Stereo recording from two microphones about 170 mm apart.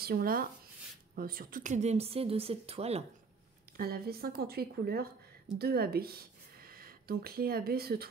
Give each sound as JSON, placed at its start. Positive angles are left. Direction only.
{"t": 0.0, "sound": "speech", "side_deg": -60}
{"t": 3.7, "sound": "speech", "side_deg": -65}